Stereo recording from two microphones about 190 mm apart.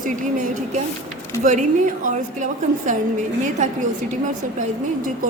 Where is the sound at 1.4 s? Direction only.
40° right (ahead or behind).